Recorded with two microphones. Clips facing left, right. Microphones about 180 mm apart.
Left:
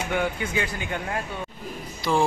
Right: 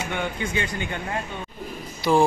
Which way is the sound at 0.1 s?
5° left (ahead or behind).